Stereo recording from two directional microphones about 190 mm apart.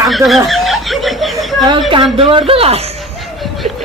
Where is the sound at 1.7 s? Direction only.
30° right (ahead or behind).